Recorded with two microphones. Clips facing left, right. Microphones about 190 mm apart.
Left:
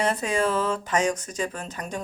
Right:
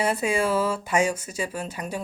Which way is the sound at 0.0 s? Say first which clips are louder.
Even; 10° right (ahead or behind).